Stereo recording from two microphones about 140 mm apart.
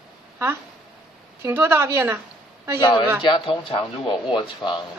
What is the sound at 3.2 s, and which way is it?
Speech, 35° left (ahead or behind).